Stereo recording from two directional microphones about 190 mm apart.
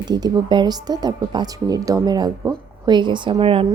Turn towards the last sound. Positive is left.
turn(degrees=-30)  # may be behind; listen again after turning